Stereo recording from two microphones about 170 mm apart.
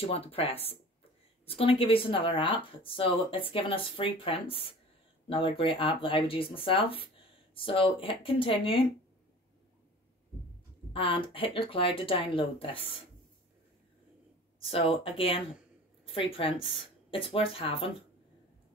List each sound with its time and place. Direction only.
0.0 s speech: 35° left (ahead or behind)
10.9 s speech: 30° left (ahead or behind)
14.7 s speech: 35° left (ahead or behind)